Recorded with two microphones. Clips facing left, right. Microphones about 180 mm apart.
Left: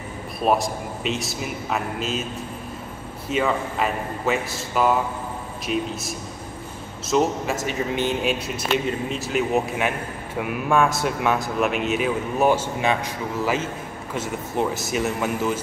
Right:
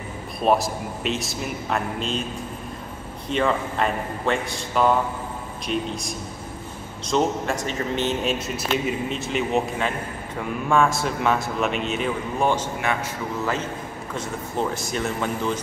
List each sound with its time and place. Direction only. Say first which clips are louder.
0.4 s speech: right 1 dB; centre (ahead or behind)
3.3 s speech: even; 5° left (ahead or behind)
7.1 s a man's voice: left 1 dB; 5° left (ahead or behind)
14.1 s speech: left 2 dB; 5° left (ahead or behind)